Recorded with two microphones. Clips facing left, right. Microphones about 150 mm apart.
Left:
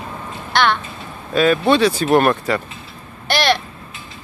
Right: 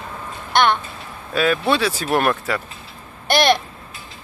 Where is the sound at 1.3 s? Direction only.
5° right (ahead or behind).